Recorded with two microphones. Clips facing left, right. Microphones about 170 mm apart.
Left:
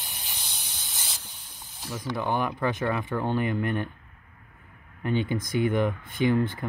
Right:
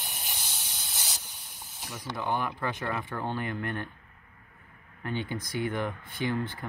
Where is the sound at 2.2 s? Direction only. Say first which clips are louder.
Left 3 dB; 20° left (ahead or behind).